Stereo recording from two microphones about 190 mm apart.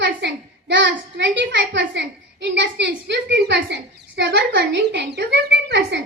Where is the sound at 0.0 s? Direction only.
70° right (ahead or behind).